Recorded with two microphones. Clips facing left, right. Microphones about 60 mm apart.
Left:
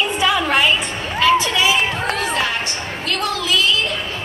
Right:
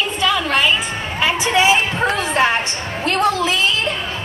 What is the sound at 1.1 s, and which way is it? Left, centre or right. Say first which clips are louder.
A woman's voice: left 1 dB; centre.